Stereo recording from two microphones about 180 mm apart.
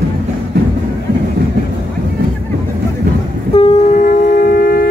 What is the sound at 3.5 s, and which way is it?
Train, 35° left (ahead or behind).